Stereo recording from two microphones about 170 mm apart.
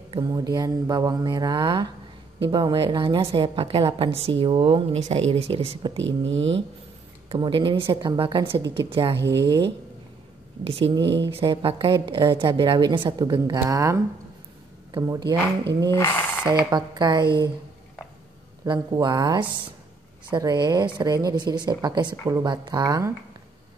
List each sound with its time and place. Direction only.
0.1 s a woman's voice: 25° right (ahead or behind)
6.0 s speech: 90° right
7.2 s a woman's voice: 30° right (ahead or behind)
10.6 s a woman's voice: 35° right (ahead or behind)
15.9 s speech: 15° left (ahead or behind)
16.7 s a woman's voice: 25° right (ahead or behind)
18.7 s a woman's voice: 25° right (ahead or behind)